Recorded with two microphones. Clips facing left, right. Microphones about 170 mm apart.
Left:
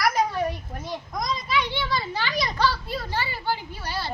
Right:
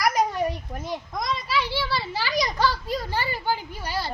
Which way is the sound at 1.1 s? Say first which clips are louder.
Left 1 dB; centre (ahead or behind).